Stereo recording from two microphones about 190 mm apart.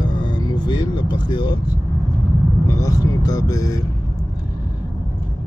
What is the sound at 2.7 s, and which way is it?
Speech, 15° left (ahead or behind).